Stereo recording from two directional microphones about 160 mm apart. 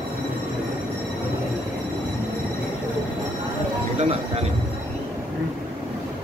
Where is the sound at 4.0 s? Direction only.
40° right (ahead or behind).